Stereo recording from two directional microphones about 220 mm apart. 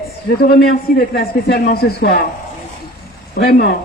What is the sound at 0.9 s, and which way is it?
Speech, 45° left (ahead or behind).